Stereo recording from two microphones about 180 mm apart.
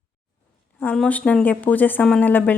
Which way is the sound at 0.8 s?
10° left (ahead or behind).